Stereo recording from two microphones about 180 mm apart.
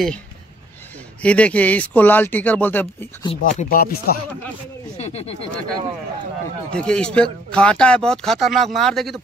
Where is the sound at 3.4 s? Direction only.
50° left (ahead or behind).